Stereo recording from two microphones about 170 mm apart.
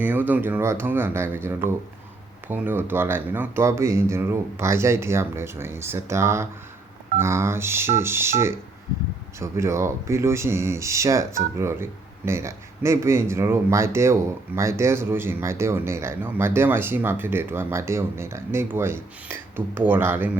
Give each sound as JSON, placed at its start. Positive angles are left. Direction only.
{"t": 0.0, "sound": "speech", "side_deg": -10}